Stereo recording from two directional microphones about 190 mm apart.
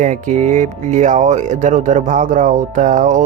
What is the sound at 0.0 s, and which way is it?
Speech, 40° right (ahead or behind).